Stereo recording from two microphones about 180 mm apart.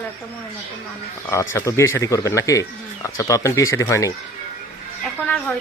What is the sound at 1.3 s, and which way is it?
Speech, 15° left (ahead or behind).